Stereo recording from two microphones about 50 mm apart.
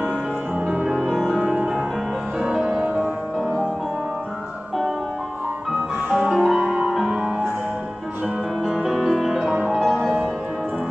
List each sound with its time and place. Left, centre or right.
0.6 s music: right
2.8 s music: right
5.7 s music: centre
6.6 s music: right
6.9 s music: centre
8.8 s music: centre